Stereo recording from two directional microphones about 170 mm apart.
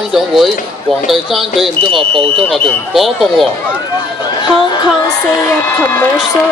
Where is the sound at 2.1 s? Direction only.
35° right (ahead or behind).